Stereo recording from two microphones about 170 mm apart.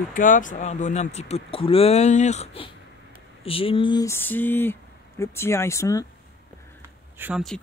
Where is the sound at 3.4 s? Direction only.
30° left (ahead or behind).